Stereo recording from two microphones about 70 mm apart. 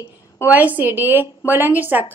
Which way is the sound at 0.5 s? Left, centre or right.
Right.